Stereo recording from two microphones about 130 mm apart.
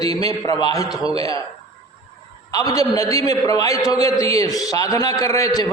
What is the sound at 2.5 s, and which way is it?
A man's voice, 25° left (ahead or behind).